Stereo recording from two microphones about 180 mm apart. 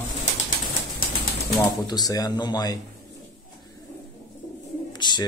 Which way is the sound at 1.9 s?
20° left (ahead or behind).